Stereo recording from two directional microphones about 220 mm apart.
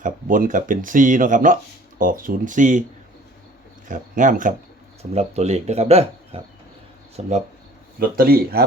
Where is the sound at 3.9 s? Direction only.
35° right (ahead or behind).